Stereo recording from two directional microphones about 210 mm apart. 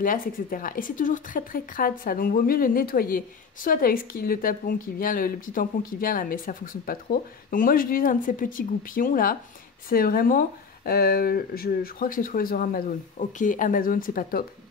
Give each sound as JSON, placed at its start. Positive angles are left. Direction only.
{"t": 0.0, "sound": "speech", "side_deg": 40}